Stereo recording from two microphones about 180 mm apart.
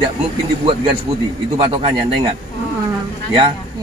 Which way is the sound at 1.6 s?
30° right (ahead or behind).